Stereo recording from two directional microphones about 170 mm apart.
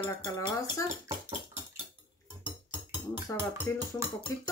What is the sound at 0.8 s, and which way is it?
Speech, 15° right (ahead or behind).